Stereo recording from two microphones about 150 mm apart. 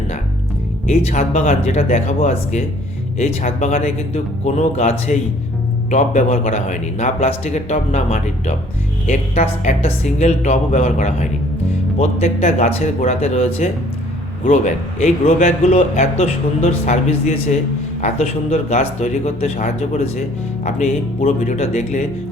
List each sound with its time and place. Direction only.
0.9 s speech: 50° left (ahead or behind)